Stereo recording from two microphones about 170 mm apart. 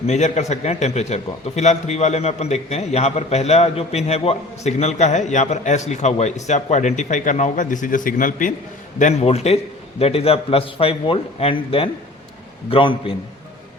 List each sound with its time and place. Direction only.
0.1 s a man's voice: 45° left (ahead or behind)